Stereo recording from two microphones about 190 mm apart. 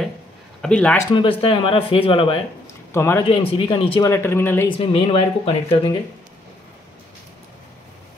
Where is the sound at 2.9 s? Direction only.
15° left (ahead or behind).